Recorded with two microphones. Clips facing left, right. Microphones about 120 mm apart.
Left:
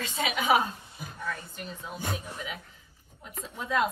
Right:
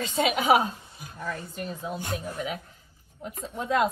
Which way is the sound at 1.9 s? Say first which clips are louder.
Right 1 dB; 40° right (ahead or behind).